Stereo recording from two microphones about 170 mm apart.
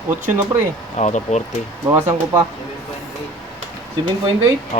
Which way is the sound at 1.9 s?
15° right (ahead or behind).